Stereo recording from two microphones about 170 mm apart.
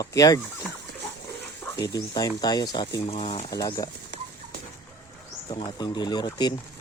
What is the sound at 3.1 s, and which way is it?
Speech, 35° left (ahead or behind).